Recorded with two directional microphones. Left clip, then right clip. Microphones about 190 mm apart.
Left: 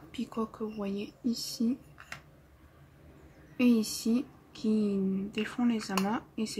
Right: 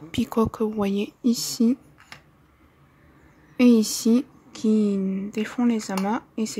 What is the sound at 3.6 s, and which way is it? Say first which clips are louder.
Speech: right 9 dB; 50° right (ahead or behind).